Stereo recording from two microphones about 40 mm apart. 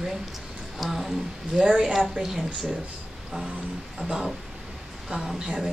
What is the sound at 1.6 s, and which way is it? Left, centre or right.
Speech, centre.